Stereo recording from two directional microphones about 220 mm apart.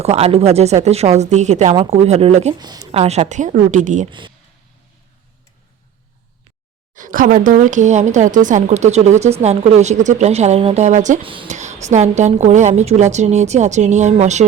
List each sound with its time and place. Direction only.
0.0 s speech: 30° right (ahead or behind)
2.6 s speech: 20° right (ahead or behind); by 4.1 s 35° right (ahead or behind)
6.9 s speech: 35° right (ahead or behind)